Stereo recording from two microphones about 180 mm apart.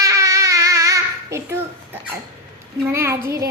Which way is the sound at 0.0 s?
15° right (ahead or behind).